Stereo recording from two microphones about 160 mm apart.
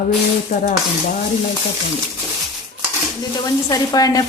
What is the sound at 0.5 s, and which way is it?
Stir, 70° left (ahead or behind).